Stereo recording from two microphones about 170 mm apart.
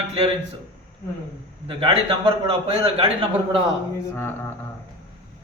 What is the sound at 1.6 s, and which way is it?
A man's voice, 30° right (ahead or behind).